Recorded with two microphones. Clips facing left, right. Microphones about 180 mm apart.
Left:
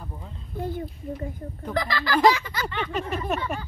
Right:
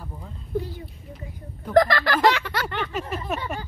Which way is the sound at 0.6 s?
50° left (ahead or behind).